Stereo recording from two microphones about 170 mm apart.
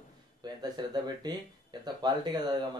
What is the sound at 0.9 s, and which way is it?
Speech, 25° right (ahead or behind).